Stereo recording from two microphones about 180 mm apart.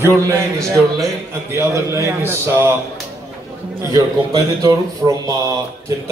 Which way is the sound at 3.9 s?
20° right (ahead or behind).